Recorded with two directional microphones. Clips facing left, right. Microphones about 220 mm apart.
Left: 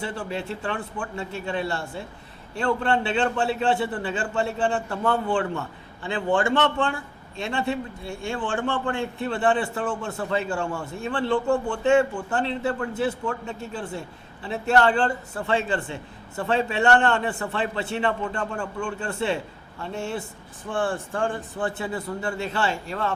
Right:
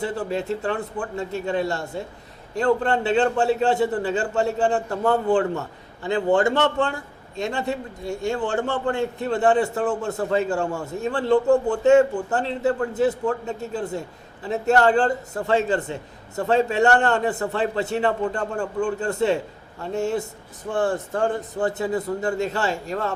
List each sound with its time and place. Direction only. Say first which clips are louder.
0.0 s a man's voice: right 5 dB; 40° right (ahead or behind)